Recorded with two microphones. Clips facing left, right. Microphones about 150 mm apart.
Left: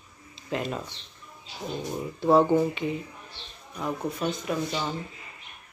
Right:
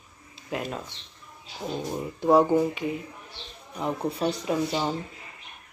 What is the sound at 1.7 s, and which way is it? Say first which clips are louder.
Speech: right 1 dB; 15° right (ahead or behind).